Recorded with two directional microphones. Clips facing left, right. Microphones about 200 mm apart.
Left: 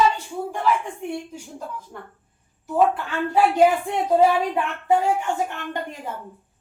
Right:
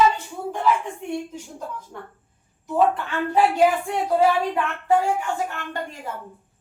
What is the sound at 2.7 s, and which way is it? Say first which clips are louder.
Speech: even; 10° left (ahead or behind).